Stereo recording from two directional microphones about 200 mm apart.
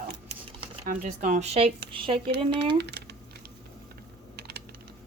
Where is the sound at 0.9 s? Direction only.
40° right (ahead or behind).